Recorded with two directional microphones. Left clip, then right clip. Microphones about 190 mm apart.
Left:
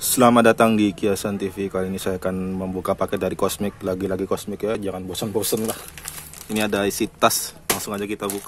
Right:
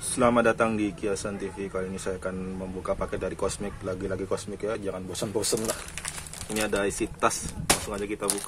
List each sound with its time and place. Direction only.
0.1 s speech: 50° left (ahead or behind)
6.5 s speech: 55° left (ahead or behind)